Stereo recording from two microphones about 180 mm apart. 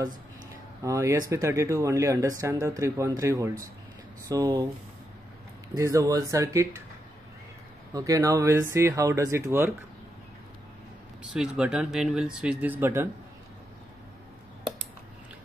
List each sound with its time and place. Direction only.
0.8 s speech: 15° right (ahead or behind)
5.8 s speech: 20° right (ahead or behind)
7.9 s speech: 20° right (ahead or behind)
11.3 s speech: 5° right (ahead or behind)